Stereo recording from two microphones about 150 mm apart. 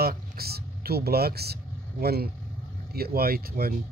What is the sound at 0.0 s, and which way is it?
Vehicle, 90° right.